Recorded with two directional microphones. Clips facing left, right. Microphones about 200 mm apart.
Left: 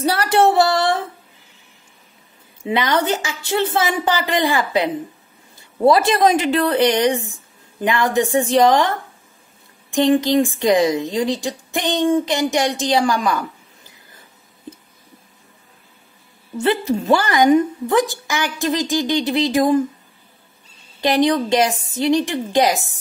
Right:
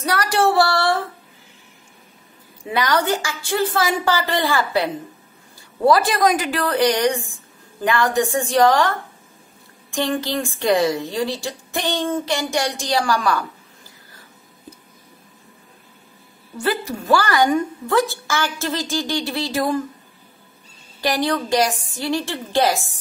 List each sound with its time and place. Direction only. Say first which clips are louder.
0.0 s child singing: left 3 dB; 25° left (ahead or behind)
2.6 s a woman's voice: left 1 dB; 20° left (ahead or behind)
16.5 s a woman's voice: left 5 dB; 25° left (ahead or behind)
21.0 s a woman's voice: left 5 dB; 20° left (ahead or behind)